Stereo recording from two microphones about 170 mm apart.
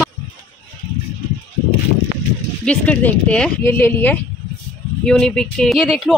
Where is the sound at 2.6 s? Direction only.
10° left (ahead or behind).